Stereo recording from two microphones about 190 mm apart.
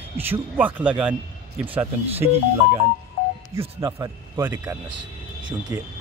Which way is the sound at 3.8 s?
20° right (ahead or behind).